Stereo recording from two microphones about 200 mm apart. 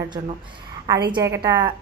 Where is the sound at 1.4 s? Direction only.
20° right (ahead or behind).